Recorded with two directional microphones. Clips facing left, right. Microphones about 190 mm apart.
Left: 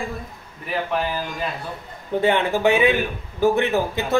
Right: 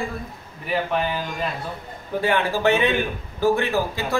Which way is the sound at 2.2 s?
25° left (ahead or behind).